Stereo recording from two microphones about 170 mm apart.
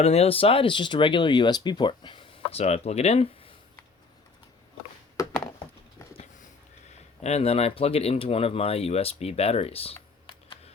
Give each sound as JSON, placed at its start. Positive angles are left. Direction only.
{"t": 0.0, "sound": "speech", "side_deg": 40}
{"t": 7.2, "sound": "speech", "side_deg": 40}